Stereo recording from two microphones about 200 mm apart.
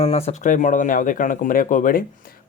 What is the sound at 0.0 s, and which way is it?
Speech, 30° left (ahead or behind).